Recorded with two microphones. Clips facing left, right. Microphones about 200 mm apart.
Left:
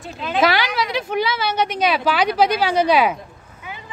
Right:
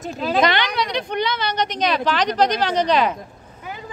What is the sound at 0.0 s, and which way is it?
Speech, 35° right (ahead or behind).